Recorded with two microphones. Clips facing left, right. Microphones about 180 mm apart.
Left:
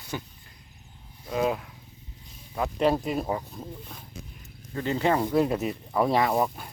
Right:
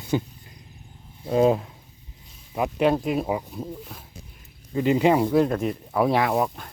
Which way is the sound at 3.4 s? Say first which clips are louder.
Right 5 dB; 15° right (ahead or behind).